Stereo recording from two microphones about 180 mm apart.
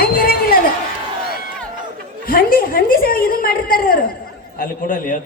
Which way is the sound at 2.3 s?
50° left (ahead or behind).